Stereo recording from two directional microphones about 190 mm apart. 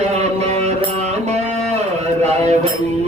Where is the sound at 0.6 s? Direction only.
35° right (ahead or behind).